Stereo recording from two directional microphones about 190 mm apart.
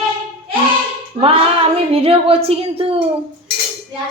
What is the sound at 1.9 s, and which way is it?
A woman's voice, 30° right (ahead or behind).